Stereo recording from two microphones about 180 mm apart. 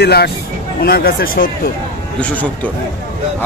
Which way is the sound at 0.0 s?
65° left (ahead or behind).